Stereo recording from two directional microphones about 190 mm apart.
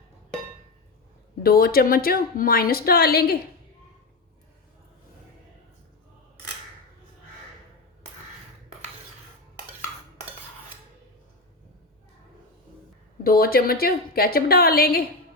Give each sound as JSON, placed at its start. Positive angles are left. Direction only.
{"t": 1.4, "sound": "a woman's voice", "side_deg": 55}
{"t": 13.2, "sound": "a woman's voice", "side_deg": 50}